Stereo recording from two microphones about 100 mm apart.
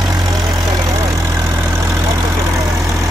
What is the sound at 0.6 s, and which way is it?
Vehicle, 35° right (ahead or behind).